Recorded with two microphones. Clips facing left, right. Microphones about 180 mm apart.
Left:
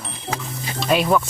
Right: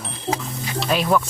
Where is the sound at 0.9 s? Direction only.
Centre (ahead or behind).